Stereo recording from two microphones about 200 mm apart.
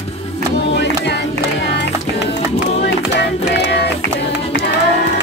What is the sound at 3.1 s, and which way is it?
Music, 60° left (ahead or behind).